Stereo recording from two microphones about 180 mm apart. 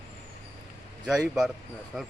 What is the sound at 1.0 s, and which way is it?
A man's voice, 5° right (ahead or behind).